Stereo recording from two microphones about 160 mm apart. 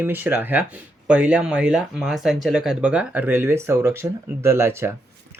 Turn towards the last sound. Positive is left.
turn(degrees=-15)  # may be behind; listen again after turning